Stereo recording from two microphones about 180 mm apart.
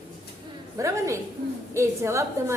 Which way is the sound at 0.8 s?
15° right (ahead or behind).